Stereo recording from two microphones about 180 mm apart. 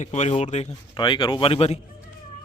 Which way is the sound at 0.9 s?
25° left (ahead or behind).